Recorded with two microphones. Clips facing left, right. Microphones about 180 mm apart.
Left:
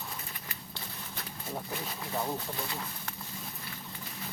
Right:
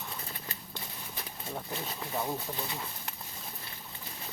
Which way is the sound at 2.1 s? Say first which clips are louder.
Even; 5° right (ahead or behind).